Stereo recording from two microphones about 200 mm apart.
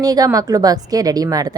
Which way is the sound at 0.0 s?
20° right (ahead or behind).